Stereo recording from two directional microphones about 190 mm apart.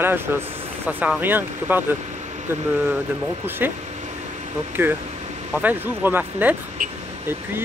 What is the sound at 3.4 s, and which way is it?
Speech, 10° right (ahead or behind).